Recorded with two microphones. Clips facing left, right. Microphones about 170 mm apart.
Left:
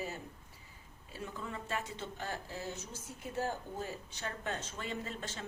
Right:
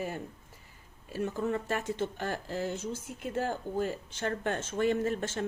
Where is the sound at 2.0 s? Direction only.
75° right (ahead or behind).